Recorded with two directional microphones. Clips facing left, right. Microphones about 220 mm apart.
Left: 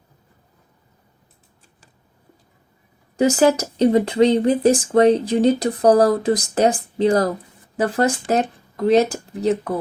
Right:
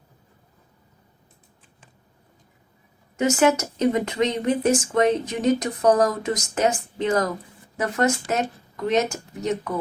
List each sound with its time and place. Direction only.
3.2 s speech: 35° left (ahead or behind)